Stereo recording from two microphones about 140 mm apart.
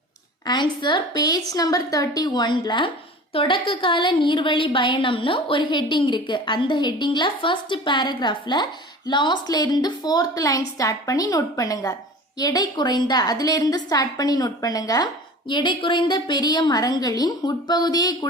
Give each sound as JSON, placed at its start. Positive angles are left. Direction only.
{"t": 0.4, "sound": "a woman's voice", "side_deg": 30}